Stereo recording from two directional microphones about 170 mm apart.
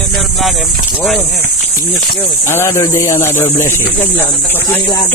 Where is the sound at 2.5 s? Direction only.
15° left (ahead or behind).